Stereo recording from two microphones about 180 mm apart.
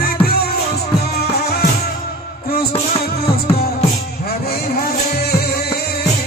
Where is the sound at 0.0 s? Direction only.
60° left (ahead or behind).